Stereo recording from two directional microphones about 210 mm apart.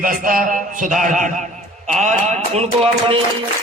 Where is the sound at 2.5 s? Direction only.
30° right (ahead or behind).